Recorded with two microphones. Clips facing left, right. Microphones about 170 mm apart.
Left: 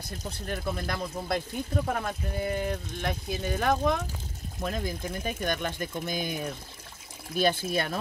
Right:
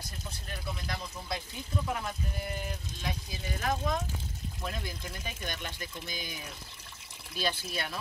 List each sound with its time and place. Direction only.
0.2 s speech: 55° left (ahead or behind)
4.6 s speech: 45° left (ahead or behind)